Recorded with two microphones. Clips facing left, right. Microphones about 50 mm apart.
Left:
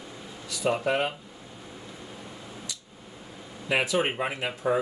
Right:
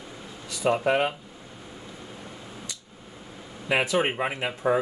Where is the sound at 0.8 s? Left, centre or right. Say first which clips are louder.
Right 4 dB; right.